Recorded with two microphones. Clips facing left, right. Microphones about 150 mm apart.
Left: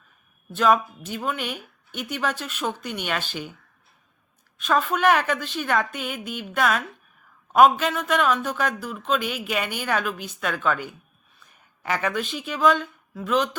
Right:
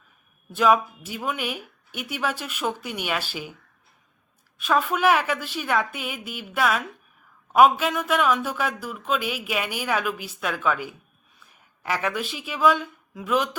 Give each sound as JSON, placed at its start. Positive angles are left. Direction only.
{"t": 0.5, "sound": "a man's voice", "side_deg": -10}
{"t": 4.5, "sound": "a woman's voice", "side_deg": -10}